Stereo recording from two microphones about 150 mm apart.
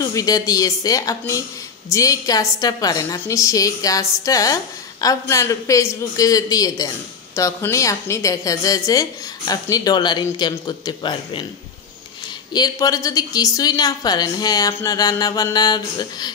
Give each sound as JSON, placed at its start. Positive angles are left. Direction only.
{"t": 0.0, "sound": "a woman's voice", "side_deg": 25}
{"t": 12.5, "sound": "a woman's voice", "side_deg": 25}